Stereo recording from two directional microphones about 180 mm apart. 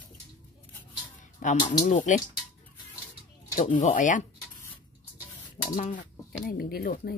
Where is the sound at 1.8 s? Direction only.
40° left (ahead or behind).